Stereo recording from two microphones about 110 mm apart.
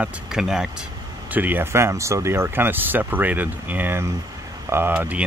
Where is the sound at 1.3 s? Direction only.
15° right (ahead or behind).